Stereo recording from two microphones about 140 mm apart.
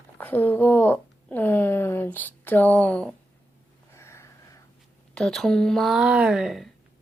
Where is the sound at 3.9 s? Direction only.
20° left (ahead or behind).